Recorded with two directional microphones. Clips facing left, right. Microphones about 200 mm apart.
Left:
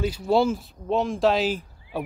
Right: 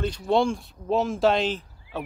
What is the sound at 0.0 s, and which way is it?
Speech, 5° left (ahead or behind).